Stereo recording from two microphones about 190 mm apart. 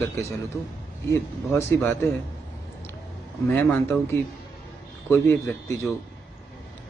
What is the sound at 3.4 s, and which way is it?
A man's voice, 10° left (ahead or behind).